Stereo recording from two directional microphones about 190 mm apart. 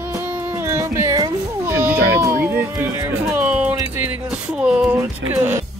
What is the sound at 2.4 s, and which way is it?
Speech, 10° right (ahead or behind).